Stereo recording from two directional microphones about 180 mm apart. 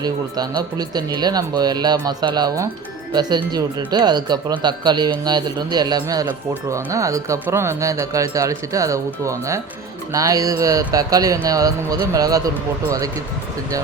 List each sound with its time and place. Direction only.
0.0 s speech: 20° right (ahead or behind)